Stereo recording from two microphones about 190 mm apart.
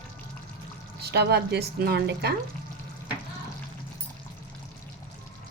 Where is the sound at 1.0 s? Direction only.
60° right (ahead or behind).